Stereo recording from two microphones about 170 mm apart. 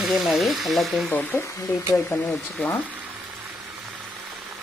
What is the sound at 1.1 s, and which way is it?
A woman's voice, 10° left (ahead or behind).